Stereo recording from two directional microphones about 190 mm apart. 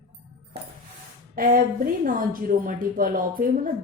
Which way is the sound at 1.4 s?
45° right (ahead or behind).